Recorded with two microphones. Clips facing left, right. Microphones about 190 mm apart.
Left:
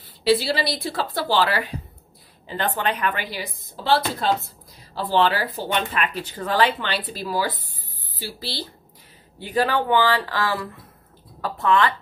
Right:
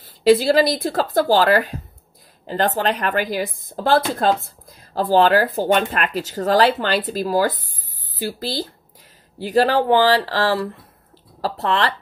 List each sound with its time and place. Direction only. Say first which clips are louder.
0.0 s speech: right 6 dB; 45° right (ahead or behind)